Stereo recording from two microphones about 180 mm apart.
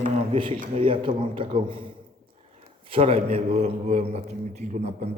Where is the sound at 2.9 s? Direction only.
35° right (ahead or behind).